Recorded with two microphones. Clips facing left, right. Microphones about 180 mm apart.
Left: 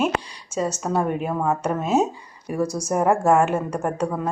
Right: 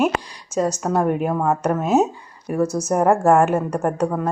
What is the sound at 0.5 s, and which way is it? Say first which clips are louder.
Speech: right 4 dB; 10° left (ahead or behind).